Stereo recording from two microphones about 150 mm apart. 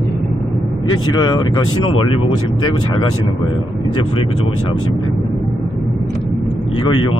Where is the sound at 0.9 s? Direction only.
30° left (ahead or behind).